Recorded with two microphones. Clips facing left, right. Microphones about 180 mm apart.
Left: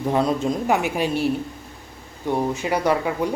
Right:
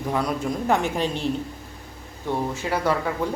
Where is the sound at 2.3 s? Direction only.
15° left (ahead or behind).